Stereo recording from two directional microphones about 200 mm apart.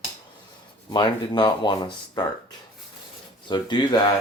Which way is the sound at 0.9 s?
20° left (ahead or behind).